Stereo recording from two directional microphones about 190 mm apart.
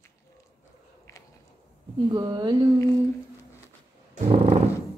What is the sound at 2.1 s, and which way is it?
Speech, 25° right (ahead or behind).